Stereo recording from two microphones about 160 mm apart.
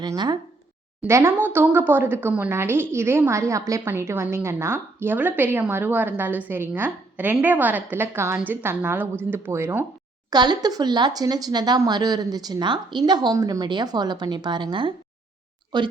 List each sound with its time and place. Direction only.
0.0 s speech: 25° right (ahead or behind)
1.0 s speech: 15° right (ahead or behind)
10.2 s speech: 25° right (ahead or behind)